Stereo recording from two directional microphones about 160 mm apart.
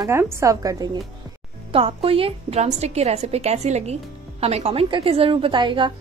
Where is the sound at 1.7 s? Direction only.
35° right (ahead or behind).